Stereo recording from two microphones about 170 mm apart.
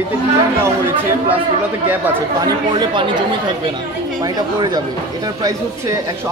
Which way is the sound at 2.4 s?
25° right (ahead or behind).